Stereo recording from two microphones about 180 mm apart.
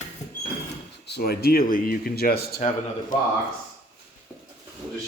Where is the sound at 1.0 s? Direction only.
65° left (ahead or behind).